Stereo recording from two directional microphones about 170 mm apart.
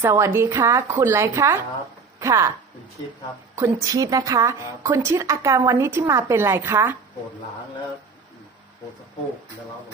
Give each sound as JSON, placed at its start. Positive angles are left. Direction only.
{"t": 0.0, "sound": "a woman's voice", "side_deg": -15}
{"t": 3.5, "sound": "a woman's voice", "side_deg": -15}